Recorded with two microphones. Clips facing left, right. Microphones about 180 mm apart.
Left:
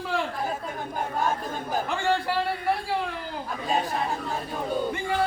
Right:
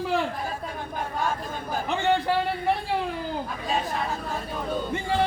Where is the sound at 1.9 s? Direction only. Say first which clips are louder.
Right 4 dB; 20° right (ahead or behind).